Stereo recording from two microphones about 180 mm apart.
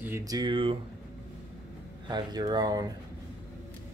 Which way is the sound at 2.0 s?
25° right (ahead or behind).